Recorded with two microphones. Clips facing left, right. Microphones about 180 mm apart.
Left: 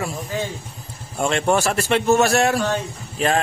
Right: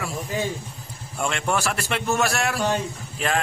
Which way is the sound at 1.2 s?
30° left (ahead or behind).